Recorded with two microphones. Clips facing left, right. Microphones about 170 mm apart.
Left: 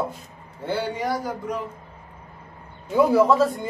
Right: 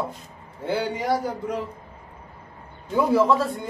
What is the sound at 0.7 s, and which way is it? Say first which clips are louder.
Speech: right 1 dB; 25° right (ahead or behind).